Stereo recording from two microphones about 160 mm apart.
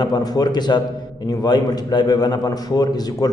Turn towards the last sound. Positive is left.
turn(degrees=25)  # may be behind; listen again after turning